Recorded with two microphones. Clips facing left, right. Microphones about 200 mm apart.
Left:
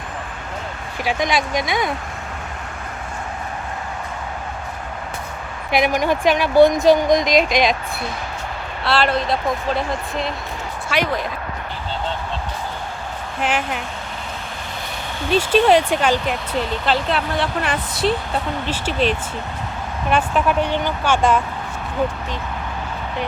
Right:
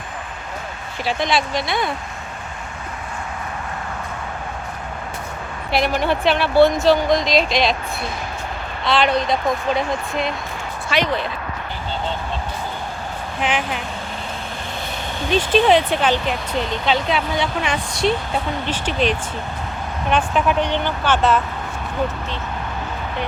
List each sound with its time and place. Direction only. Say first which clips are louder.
1.0 s speech: even; 15° left (ahead or behind)
6.1 s speech: left 1 dB; 10° left (ahead or behind)
7.2 s speech: left 2 dB; 50° left (ahead or behind)
8.8 s speech: right 1 dB; 5° left (ahead or behind)
13.4 s speech: even; 5° left (ahead or behind)
15.3 s speech: left 1 dB; 5° left (ahead or behind)
18.9 s speech: even; 35° left (ahead or behind)
20.1 s speech: even; 5° left (ahead or behind)